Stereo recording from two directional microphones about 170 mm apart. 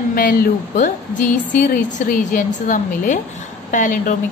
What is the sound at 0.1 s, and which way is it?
Speech, 55° left (ahead or behind).